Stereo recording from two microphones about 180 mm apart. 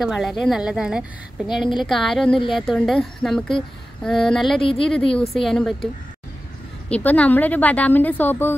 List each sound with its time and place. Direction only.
0.0 s speech: centre (ahead or behind)
4.6 s speech: 30° left (ahead or behind)
5.3 s speech: centre (ahead or behind)
6.9 s a woman's voice: 10° left (ahead or behind)